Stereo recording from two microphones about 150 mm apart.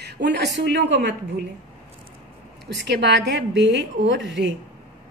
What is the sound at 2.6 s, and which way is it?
Speech, 90° right.